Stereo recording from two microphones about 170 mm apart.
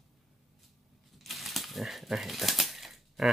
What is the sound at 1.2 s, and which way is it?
Speech, centre (ahead or behind).